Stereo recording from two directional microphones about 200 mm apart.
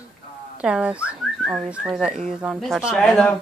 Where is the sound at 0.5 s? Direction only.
5° right (ahead or behind).